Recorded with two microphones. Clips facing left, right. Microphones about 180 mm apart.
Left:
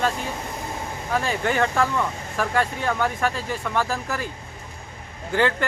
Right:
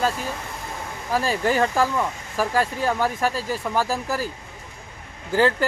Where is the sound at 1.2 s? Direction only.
35° right (ahead or behind).